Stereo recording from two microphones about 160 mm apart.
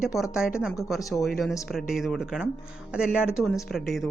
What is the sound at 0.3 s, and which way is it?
Speech, 5° right (ahead or behind).